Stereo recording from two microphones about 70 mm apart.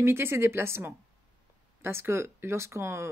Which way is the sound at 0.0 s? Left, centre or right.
Right.